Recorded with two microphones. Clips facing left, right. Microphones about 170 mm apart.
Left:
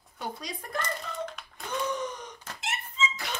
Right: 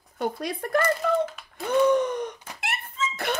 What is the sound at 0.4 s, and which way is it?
Speech, 60° right (ahead or behind).